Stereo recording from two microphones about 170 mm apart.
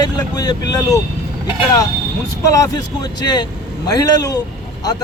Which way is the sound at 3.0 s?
25° left (ahead or behind).